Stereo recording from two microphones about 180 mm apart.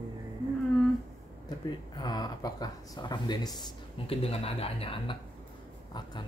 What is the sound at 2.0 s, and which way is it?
A man's voice, 20° left (ahead or behind).